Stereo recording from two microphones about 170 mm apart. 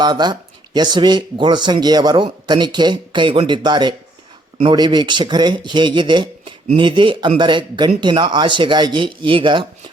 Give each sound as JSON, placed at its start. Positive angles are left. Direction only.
{"t": 0.0, "sound": "speech", "side_deg": -25}